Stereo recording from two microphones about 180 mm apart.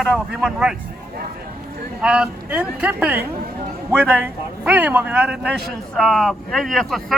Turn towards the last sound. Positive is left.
turn(degrees=0)  # may be behind; listen again after turning